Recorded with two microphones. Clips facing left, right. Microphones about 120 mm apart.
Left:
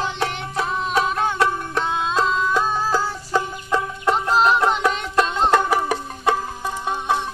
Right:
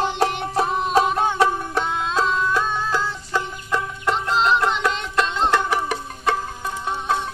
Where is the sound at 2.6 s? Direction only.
30° left (ahead or behind).